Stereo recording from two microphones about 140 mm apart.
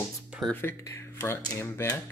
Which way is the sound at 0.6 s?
20° left (ahead or behind).